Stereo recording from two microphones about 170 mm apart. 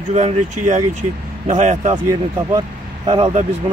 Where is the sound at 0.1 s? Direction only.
40° right (ahead or behind).